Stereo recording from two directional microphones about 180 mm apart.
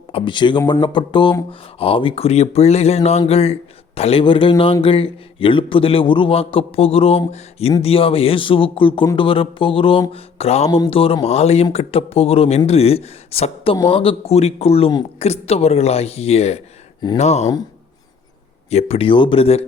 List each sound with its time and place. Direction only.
0.1 s speech: 30° left (ahead or behind)
18.7 s speech: 35° left (ahead or behind)